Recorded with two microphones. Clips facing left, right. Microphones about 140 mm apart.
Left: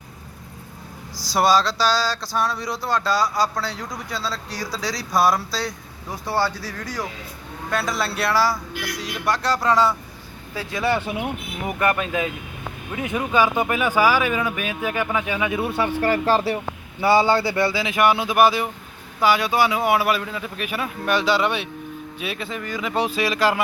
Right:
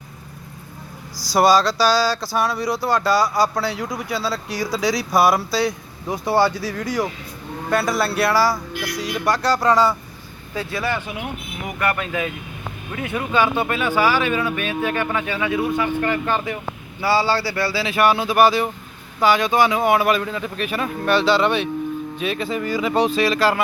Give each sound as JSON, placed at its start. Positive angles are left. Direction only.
{"t": 1.3, "sound": "speech", "side_deg": 0}
{"t": 10.5, "sound": "speech", "side_deg": 15}
{"t": 15.7, "sound": "speech", "side_deg": 30}
{"t": 17.0, "sound": "speech", "side_deg": 20}
{"t": 22.4, "sound": "speech", "side_deg": -5}